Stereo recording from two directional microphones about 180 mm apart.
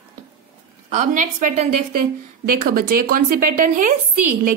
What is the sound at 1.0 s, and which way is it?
A woman's voice, 45° right (ahead or behind).